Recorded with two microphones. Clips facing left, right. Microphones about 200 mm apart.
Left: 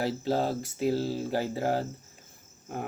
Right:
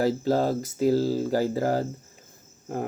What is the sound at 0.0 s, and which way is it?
Speech, 45° right (ahead or behind).